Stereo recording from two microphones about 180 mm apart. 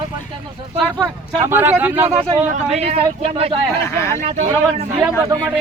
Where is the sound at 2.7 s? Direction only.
35° right (ahead or behind).